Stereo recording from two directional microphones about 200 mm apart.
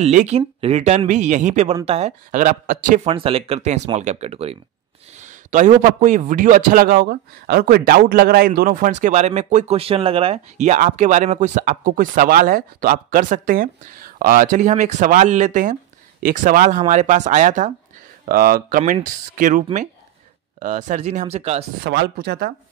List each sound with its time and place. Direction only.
0.0 s a man's voice: 35° right (ahead or behind)
3.1 s a man's voice: 30° right (ahead or behind)
21.8 s speech: 55° right (ahead or behind)